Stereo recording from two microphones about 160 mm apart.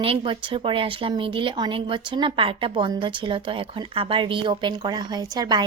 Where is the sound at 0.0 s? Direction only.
35° right (ahead or behind).